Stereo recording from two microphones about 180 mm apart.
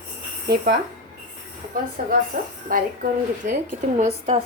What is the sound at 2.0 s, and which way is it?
A woman's voice, 50° right (ahead or behind).